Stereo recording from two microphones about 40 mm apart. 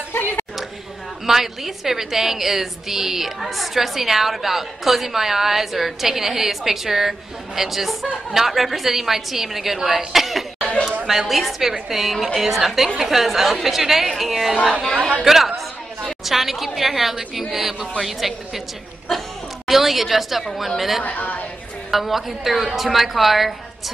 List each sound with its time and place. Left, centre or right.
0.1 s a sound: left
1.2 s a woman's voice: centre
14.6 s a woman's voice: right
15.2 s a woman's voice: centre
21.0 s speech: left
21.9 s a woman's voice: centre